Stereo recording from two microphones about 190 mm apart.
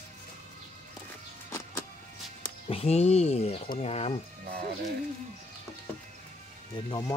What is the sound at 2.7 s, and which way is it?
Speech, 35° left (ahead or behind).